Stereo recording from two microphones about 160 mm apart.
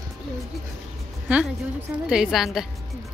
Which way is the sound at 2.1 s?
Centre (ahead or behind).